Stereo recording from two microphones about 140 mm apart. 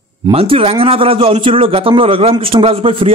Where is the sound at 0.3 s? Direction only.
45° right (ahead or behind).